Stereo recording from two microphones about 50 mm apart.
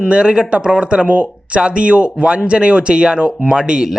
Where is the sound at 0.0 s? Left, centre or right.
Centre.